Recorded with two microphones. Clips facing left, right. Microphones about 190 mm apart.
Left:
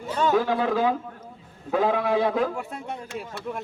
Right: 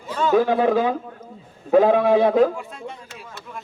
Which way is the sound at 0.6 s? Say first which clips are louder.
Right 4 dB; 20° right (ahead or behind).